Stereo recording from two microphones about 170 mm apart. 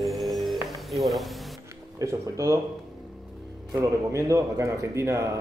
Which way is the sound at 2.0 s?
20° right (ahead or behind).